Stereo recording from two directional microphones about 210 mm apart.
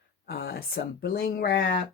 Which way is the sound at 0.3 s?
50° left (ahead or behind).